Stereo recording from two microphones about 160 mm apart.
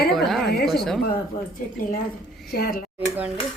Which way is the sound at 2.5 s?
75° left (ahead or behind).